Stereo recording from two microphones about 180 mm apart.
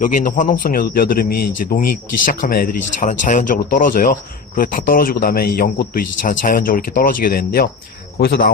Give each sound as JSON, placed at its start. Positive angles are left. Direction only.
{"t": 0.0, "sound": "a man's voice", "side_deg": 50}